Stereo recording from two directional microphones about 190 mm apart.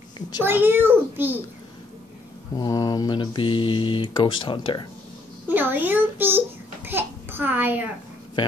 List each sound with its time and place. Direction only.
0.4 s a child's voice: 10° right (ahead or behind)
2.5 s speech: 20° left (ahead or behind)
5.5 s a sound: 10° right (ahead or behind)